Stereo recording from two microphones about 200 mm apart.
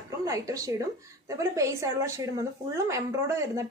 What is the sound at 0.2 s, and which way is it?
A woman's voice, 15° right (ahead or behind).